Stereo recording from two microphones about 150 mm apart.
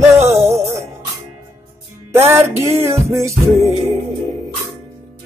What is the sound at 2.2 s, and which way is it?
Music, 15° right (ahead or behind).